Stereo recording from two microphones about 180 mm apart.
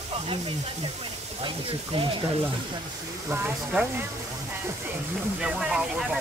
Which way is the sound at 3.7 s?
10° right (ahead or behind).